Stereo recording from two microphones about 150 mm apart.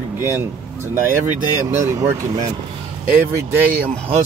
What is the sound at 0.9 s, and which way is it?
Speech, 15° right (ahead or behind).